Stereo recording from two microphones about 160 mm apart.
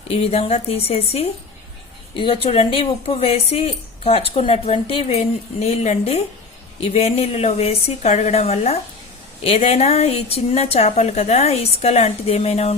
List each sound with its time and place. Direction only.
0.1 s speech: 40° left (ahead or behind)